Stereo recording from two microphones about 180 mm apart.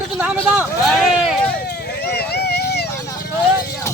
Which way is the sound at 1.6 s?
65° left (ahead or behind).